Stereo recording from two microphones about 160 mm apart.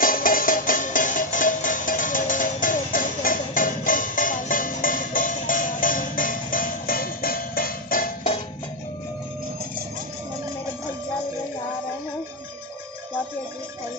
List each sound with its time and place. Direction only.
0.0 s music: 60° left (ahead or behind)